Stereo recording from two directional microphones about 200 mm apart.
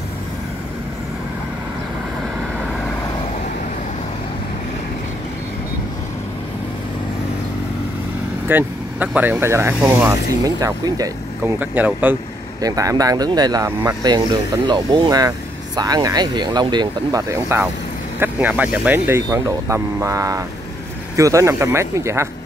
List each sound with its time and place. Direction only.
8.5 s speech: 10° right (ahead or behind)